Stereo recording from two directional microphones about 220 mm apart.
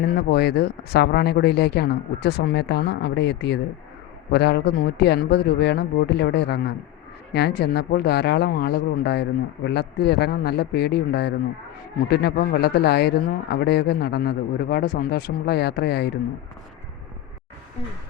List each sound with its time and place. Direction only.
0.2 s speech: 45° left (ahead or behind)